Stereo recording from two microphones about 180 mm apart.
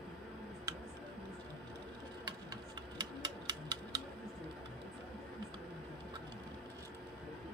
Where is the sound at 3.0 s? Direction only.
20° right (ahead or behind).